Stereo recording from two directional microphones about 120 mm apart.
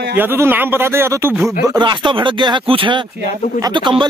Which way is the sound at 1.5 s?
35° right (ahead or behind).